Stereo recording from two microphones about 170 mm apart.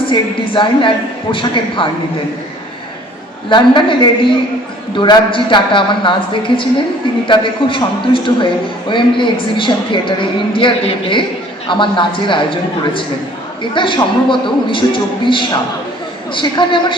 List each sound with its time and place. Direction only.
0.1 s a woman's voice: 30° left (ahead or behind)
3.5 s a woman's voice: 30° left (ahead or behind)